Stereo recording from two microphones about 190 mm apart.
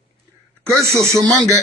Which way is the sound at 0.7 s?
15° right (ahead or behind).